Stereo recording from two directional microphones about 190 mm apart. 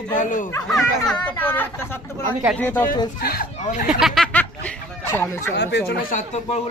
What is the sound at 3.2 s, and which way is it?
Speech, 50° left (ahead or behind).